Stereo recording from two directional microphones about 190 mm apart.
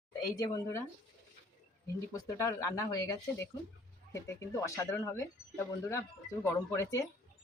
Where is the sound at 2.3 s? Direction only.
15° left (ahead or behind).